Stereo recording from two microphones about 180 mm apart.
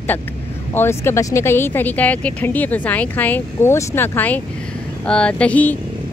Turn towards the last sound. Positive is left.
turn(degrees=10)  # may be behind; listen again after turning